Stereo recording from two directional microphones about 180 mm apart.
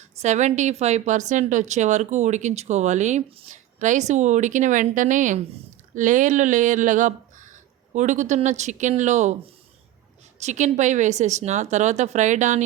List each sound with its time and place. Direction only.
0.2 s a woman's voice: 40° right (ahead or behind)
10.4 s a woman's voice: 40° right (ahead or behind)